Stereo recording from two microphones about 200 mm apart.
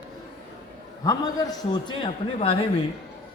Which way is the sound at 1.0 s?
15° left (ahead or behind).